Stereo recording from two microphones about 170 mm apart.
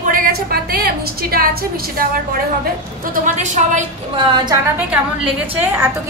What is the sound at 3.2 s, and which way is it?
Speech, 45° right (ahead or behind).